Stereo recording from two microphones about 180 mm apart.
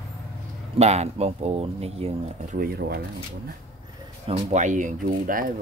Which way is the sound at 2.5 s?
60° right (ahead or behind).